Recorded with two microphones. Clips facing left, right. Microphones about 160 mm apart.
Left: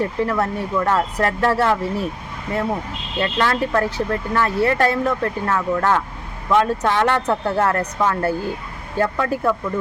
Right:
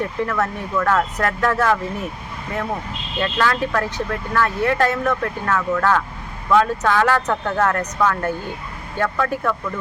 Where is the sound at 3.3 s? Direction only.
25° left (ahead or behind).